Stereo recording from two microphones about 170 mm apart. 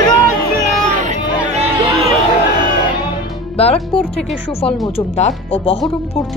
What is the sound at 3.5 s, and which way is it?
Music, 35° left (ahead or behind).